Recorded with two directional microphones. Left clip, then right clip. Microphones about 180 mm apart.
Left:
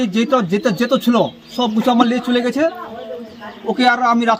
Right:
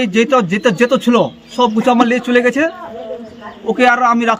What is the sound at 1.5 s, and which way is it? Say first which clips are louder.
Speech: right 4 dB; 30° right (ahead or behind).